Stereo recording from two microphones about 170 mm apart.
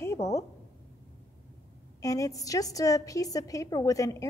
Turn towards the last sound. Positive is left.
turn(degrees=20)  # may be behind; listen again after turning